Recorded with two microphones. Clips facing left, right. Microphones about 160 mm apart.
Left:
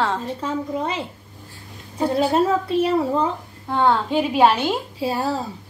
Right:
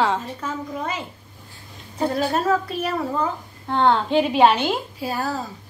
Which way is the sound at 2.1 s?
25° left (ahead or behind).